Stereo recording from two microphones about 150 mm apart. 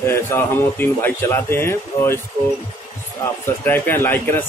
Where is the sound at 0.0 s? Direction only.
15° left (ahead or behind).